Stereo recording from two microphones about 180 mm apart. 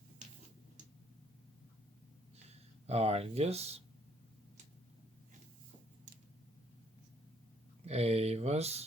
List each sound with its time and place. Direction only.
2.8 s speech: 35° right (ahead or behind)
7.9 s speech: 35° right (ahead or behind)